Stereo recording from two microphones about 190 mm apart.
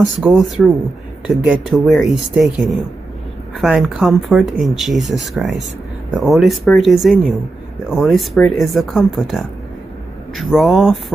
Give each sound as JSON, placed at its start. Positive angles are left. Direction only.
{"t": 0.2, "sound": "speech", "side_deg": 0}